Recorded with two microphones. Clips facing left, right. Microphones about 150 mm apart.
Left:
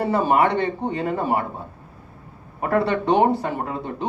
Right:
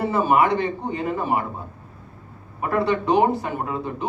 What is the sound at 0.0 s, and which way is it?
Speech, 35° left (ahead or behind).